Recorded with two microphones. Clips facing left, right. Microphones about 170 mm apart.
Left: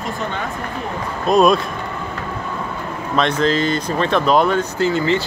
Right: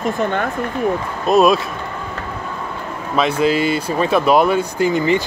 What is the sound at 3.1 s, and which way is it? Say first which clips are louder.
Speech: right 1 dB; 5° right (ahead or behind).